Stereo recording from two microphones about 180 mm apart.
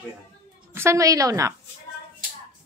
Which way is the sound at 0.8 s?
15° right (ahead or behind).